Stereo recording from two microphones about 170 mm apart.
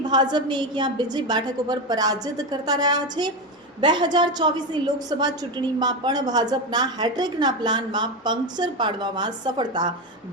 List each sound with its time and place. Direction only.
0.0 s a woman's voice: 25° right (ahead or behind)